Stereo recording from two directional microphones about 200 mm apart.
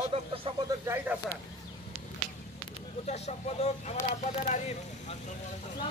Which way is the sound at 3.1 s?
35° left (ahead or behind).